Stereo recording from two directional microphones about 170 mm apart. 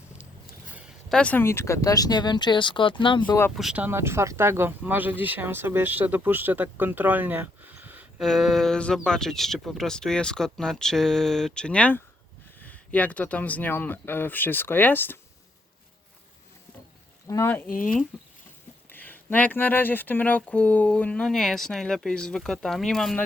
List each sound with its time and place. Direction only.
1.1 s speech: 10° left (ahead or behind); by 3.3 s 30° left (ahead or behind)
3.5 s speech: 5° right (ahead or behind)
8.2 s speech: centre (ahead or behind)
17.2 s speech: 15° left (ahead or behind)
17.7 s speech: 50° left (ahead or behind)
18.9 s speech: 10° left (ahead or behind)